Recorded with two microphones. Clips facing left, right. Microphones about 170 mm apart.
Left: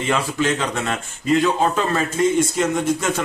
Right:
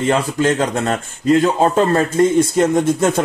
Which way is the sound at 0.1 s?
45° right (ahead or behind).